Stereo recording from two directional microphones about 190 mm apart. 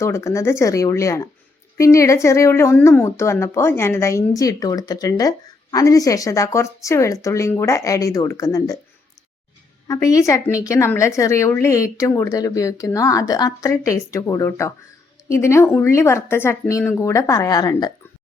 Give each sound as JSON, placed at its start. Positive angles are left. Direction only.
{"t": 0.0, "sound": "a woman's voice", "side_deg": 15}
{"t": 9.8, "sound": "a woman's voice", "side_deg": 20}